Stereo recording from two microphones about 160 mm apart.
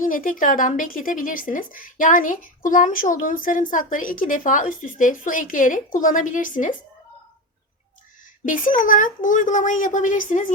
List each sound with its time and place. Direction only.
0.0 s a woman's voice: 55° left (ahead or behind)
8.4 s a woman's voice: 55° left (ahead or behind)